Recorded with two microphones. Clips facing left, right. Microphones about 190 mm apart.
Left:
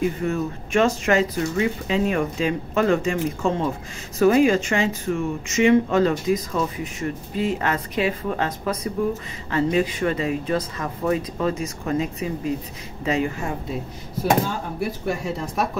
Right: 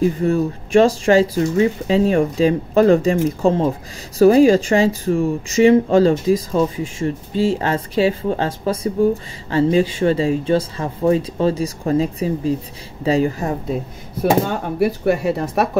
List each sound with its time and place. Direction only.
0.0 s speech: 35° right (ahead or behind)
14.4 s speech: 65° right (ahead or behind)